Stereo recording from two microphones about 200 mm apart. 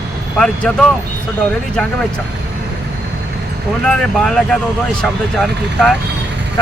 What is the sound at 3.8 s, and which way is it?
Speech, 5° left (ahead or behind).